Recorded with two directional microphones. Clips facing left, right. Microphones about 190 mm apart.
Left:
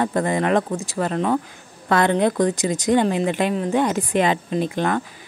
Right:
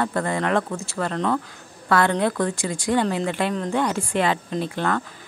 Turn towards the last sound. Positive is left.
turn(degrees=15)  # may be behind; listen again after turning